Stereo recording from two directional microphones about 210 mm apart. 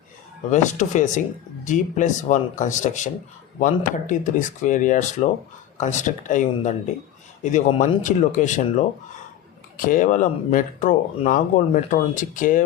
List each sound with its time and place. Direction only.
0.5 s speech: 35° left (ahead or behind)
9.7 s speech: 40° left (ahead or behind)